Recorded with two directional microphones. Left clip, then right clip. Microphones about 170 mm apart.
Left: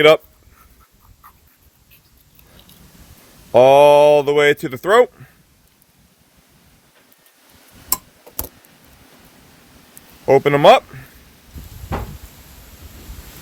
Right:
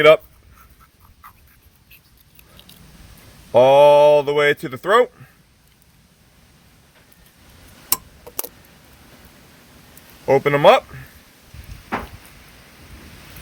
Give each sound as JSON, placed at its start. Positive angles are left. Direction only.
{"t": 3.5, "sound": "speech", "side_deg": 65}
{"t": 10.2, "sound": "speech", "side_deg": 60}